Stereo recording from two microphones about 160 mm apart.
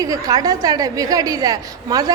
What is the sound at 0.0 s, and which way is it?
A woman's voice, 25° right (ahead or behind).